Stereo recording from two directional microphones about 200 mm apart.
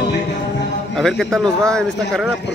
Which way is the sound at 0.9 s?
Centre (ahead or behind).